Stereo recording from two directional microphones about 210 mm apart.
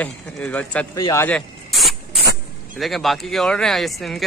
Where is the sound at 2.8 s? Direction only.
Centre (ahead or behind).